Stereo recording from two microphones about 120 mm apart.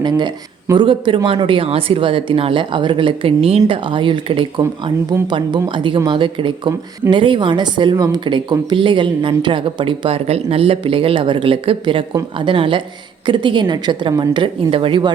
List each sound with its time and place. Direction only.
0.0 s a woman's voice: 35° right (ahead or behind)